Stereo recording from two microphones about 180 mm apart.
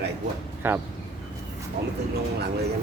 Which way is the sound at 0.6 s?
10° right (ahead or behind).